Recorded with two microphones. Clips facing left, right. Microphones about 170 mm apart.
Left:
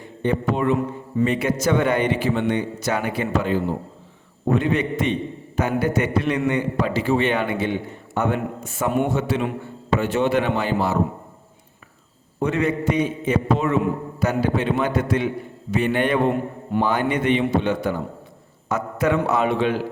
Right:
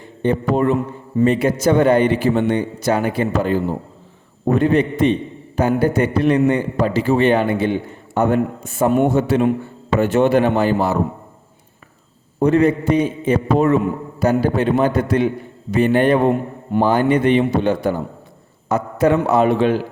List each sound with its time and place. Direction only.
0.2 s a man's voice: 35° right (ahead or behind)
12.4 s a man's voice: 35° right (ahead or behind)